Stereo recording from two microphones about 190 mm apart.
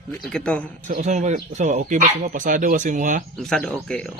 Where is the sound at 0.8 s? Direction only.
40° right (ahead or behind).